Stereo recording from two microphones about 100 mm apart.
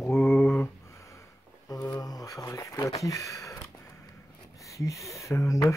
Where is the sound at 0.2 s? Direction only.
15° left (ahead or behind).